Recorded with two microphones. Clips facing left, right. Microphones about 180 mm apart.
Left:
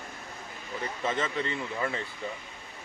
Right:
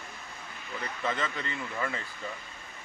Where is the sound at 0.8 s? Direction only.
20° left (ahead or behind).